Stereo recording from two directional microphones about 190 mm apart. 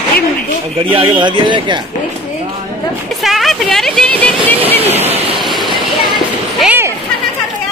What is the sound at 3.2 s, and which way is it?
Speech, centre (ahead or behind).